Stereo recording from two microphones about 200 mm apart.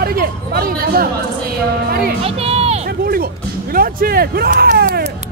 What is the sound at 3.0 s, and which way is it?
Speech, 50° right (ahead or behind).